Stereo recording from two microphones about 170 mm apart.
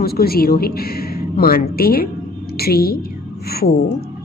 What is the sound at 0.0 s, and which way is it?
A woman's voice, 65° left (ahead or behind).